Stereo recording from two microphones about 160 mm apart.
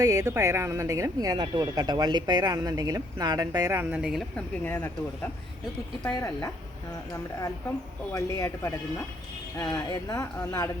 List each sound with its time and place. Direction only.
0.0 s speech: 20° right (ahead or behind); by 4.4 s centre (ahead or behind)
4.6 s speech: 10° left (ahead or behind)
8.1 s speech: 20° left (ahead or behind)